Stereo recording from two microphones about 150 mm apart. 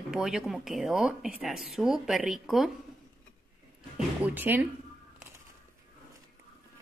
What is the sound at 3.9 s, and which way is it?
Speech, 10° right (ahead or behind).